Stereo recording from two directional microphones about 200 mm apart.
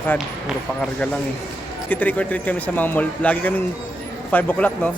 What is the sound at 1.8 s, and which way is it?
A man's voice, 10° left (ahead or behind).